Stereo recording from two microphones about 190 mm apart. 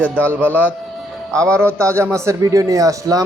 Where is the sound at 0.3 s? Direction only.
10° right (ahead or behind).